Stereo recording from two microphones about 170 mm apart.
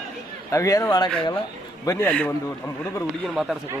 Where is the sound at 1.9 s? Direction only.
10° left (ahead or behind).